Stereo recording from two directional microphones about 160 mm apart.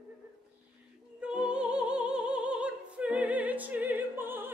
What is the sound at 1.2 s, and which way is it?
Music, 5° right (ahead or behind).